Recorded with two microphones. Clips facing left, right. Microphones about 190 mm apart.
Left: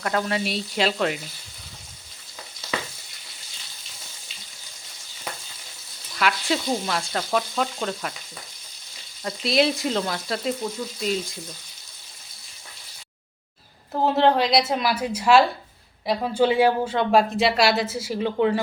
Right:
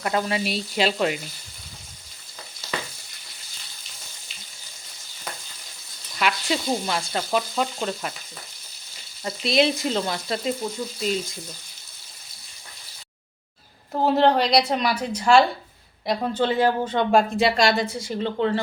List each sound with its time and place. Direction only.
0.0 s speech: 5° right (ahead or behind)
6.1 s speech: centre (ahead or behind)
9.2 s speech: centre (ahead or behind)
13.9 s speech: centre (ahead or behind)